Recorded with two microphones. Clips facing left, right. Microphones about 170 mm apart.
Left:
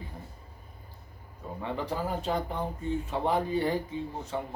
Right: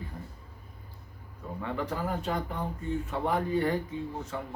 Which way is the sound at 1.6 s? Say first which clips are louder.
Even; 25° left (ahead or behind).